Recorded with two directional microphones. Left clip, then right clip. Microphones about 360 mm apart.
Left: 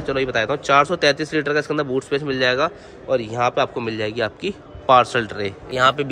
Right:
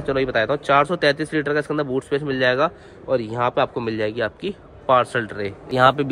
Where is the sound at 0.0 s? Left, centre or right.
Centre.